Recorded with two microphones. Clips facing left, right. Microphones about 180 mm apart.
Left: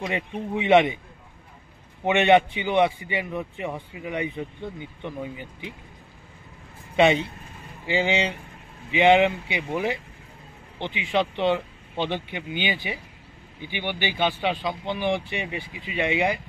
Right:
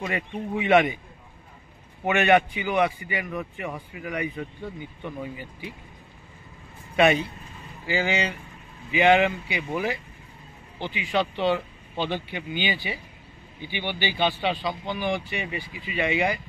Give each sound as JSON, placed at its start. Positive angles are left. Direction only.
{"t": 0.0, "sound": "speech", "side_deg": 20}
{"t": 2.0, "sound": "speech", "side_deg": 25}
{"t": 7.0, "sound": "speech", "side_deg": 25}